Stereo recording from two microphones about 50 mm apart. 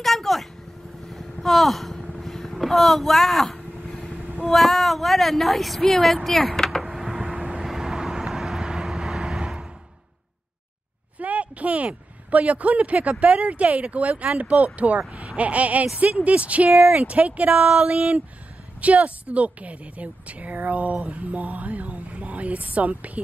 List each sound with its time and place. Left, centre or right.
0.0 s a sound: centre
2.1 s vehicle: centre
4.4 s speech: centre
6.8 s vehicle: centre
11.1 s a sound: right
13.2 s speech: right